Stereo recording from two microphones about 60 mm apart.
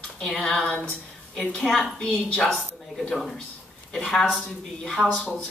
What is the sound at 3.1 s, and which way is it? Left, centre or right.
Speech, centre.